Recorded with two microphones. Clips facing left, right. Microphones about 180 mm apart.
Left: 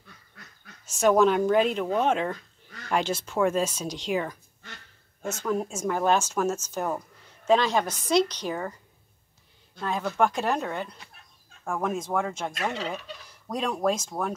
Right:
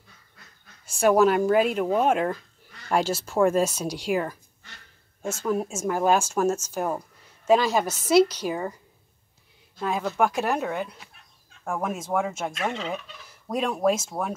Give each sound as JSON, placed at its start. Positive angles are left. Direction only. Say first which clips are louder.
{"t": 0.8, "sound": "speech", "louder": "right 1 dB", "side_deg": -10}
{"t": 9.8, "sound": "speech", "louder": "right 1 dB", "side_deg": -10}